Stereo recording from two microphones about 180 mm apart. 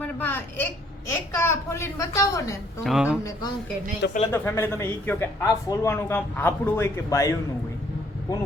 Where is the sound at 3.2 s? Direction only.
20° left (ahead or behind).